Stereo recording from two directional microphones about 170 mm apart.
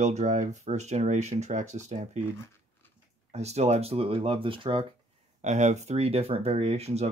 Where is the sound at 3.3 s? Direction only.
40° right (ahead or behind).